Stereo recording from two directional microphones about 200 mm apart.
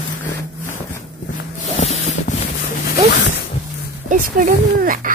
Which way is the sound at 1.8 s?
35° left (ahead or behind).